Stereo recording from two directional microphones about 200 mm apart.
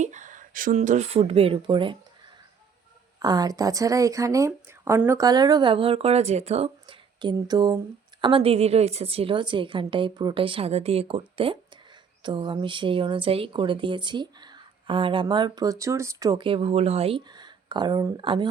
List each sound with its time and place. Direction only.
0.0 s speech: 40° right (ahead or behind)
3.2 s speech: 20° right (ahead or behind)